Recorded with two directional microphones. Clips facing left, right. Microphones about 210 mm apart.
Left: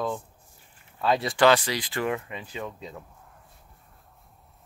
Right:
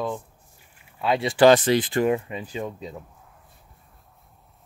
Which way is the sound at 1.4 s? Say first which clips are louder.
Right 6 dB; 50° right (ahead or behind).